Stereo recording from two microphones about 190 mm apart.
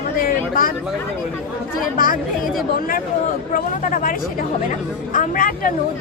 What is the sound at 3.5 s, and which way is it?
Speech, 45° left (ahead or behind).